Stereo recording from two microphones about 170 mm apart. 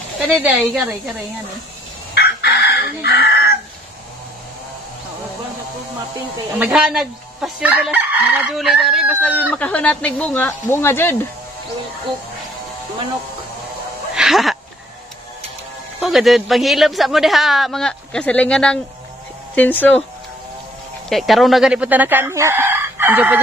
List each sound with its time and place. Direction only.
0.3 s speech: 10° right (ahead or behind)
2.1 s chicken: 70° left (ahead or behind)
6.6 s speech: 5° right (ahead or behind); by 11.1 s 15° left (ahead or behind)
14.1 s a sound: centre (ahead or behind)
16.0 s speech: centre (ahead or behind)
21.1 s speech: centre (ahead or behind)